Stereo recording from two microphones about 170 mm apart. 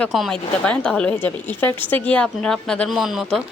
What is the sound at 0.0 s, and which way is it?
A woman's voice, centre (ahead or behind).